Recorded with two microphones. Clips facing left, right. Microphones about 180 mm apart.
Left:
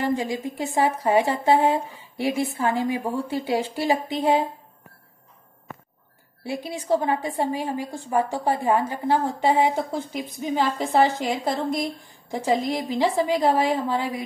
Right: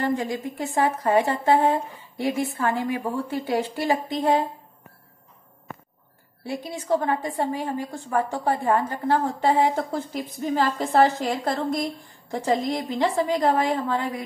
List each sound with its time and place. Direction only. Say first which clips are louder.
0.0 s a woman's voice: left 1 dB; 10° left (ahead or behind); by 3.5 s 30° left (ahead or behind)
3.8 s a woman's voice: left 1 dB; 10° left (ahead or behind)
6.5 s a woman's voice: left 1 dB; 10° left (ahead or behind)